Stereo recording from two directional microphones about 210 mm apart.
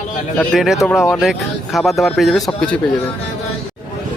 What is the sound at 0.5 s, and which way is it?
Speech, centre (ahead or behind).